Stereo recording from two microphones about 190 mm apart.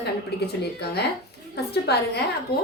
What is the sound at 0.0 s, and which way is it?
A woman's voice, 60° left (ahead or behind).